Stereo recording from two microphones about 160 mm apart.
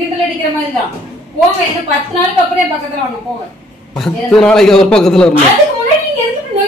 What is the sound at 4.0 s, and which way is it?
Speech, 5° left (ahead or behind).